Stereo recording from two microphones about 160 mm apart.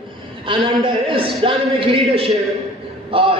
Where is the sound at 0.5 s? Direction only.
30° right (ahead or behind).